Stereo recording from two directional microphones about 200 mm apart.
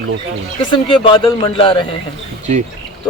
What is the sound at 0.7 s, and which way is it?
Speech, 25° left (ahead or behind).